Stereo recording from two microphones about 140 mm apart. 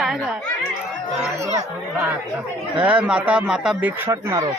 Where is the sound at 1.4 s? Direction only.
25° right (ahead or behind).